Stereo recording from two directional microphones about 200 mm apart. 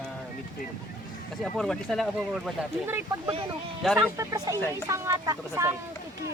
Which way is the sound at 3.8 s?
Centre (ahead or behind).